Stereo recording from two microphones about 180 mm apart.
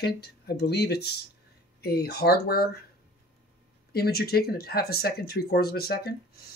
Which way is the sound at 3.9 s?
60° left (ahead or behind).